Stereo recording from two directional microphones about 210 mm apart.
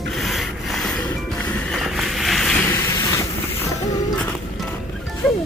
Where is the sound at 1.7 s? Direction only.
Centre (ahead or behind).